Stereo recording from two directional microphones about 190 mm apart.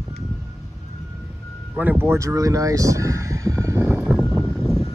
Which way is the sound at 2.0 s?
15° right (ahead or behind).